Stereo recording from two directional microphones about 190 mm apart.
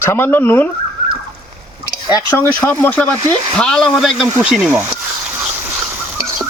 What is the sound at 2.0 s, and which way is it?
Speech, 20° left (ahead or behind).